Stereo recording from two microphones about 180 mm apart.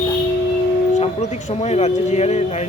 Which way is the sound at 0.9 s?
40° left (ahead or behind).